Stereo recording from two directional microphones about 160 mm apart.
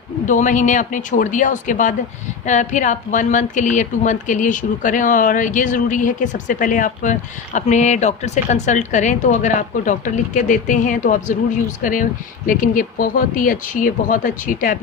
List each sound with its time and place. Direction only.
0.3 s a woman's voice: 50° left (ahead or behind)